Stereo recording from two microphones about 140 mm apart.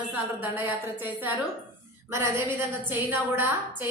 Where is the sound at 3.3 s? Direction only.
15° right (ahead or behind).